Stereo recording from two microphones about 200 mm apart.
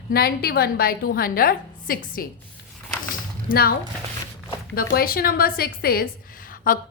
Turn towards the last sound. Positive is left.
turn(degrees=45)  # may be behind; listen again after turning